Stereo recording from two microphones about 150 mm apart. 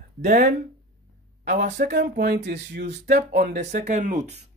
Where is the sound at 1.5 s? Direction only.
55° right (ahead or behind).